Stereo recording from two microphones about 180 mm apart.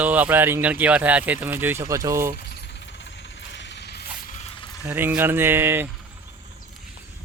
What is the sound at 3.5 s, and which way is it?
Music, 75° left (ahead or behind).